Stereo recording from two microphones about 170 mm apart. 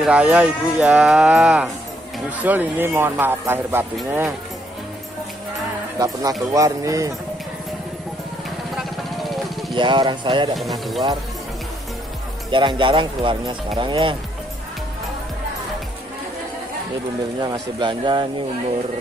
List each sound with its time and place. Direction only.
0.0 s speech: 5° right (ahead or behind)
5.9 s speech: 20° right (ahead or behind)
8.5 s vehicle: centre (ahead or behind)
9.8 s speech: 30° right (ahead or behind)
10.5 s speech: centre (ahead or behind)
12.4 s speech: 30° right (ahead or behind)
17.4 s speech: 25° right (ahead or behind)